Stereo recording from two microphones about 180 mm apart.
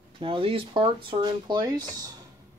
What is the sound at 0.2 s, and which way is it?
Speech, 30° right (ahead or behind).